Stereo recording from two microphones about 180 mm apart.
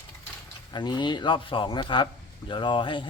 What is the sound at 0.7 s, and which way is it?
Speech, 25° left (ahead or behind).